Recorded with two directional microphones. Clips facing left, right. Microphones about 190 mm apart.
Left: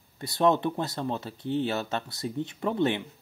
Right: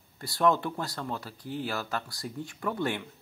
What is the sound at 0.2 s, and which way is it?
Speech, 20° left (ahead or behind).